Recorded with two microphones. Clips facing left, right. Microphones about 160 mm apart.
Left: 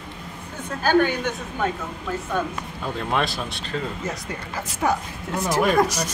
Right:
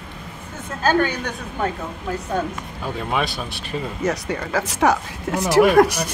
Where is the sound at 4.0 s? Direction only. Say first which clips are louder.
Right 7 dB; 80° right.